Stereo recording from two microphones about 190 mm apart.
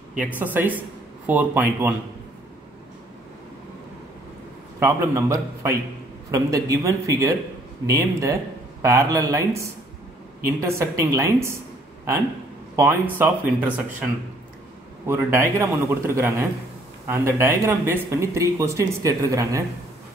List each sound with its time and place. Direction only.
0.2 s speech: 10° right (ahead or behind)
4.7 s speech: 15° right (ahead or behind)
12.7 s speech: 10° right (ahead or behind)
15.0 s speech: 15° right (ahead or behind)